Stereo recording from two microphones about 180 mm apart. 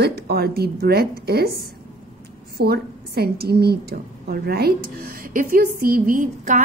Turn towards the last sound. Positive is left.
turn(degrees=-45)  # may be behind; listen again after turning